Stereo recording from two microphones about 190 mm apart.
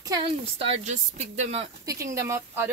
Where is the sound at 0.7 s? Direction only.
35° right (ahead or behind).